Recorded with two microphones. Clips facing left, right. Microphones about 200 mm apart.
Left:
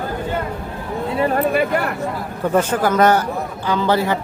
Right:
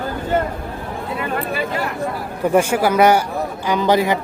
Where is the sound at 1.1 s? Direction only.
35° left (ahead or behind).